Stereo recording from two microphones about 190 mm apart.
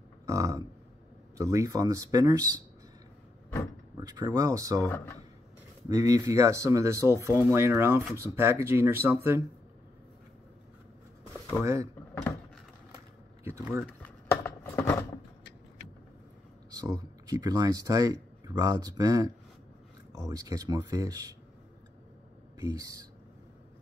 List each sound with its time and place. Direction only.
0.3 s speech: 15° right (ahead or behind)
3.9 s speech: 20° right (ahead or behind)
4.8 s speech: 10° left (ahead or behind)
5.9 s speech: 20° right (ahead or behind)
11.5 s speech: 15° right (ahead or behind)
13.4 s speech: 15° right (ahead or behind)
14.0 s a sound: 15° left (ahead or behind)
16.7 s speech: 20° right (ahead or behind)
22.6 s speech: 20° right (ahead or behind)